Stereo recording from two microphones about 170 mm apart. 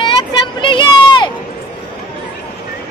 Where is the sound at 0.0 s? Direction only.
25° left (ahead or behind).